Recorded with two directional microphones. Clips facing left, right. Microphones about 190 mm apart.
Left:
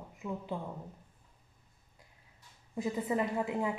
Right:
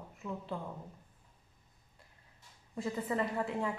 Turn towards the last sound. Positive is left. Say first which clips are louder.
# left 2 dB
turn(degrees=10)  # may be behind; listen again after turning